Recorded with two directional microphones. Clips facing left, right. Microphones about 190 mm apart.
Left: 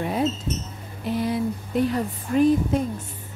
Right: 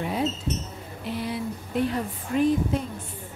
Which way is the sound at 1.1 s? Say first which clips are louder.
Left 6 dB; 45° left (ahead or behind).